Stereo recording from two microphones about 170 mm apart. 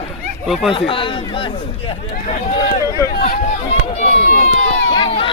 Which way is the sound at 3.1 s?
65° left (ahead or behind).